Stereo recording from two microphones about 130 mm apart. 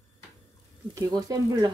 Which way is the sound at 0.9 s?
30° right (ahead or behind).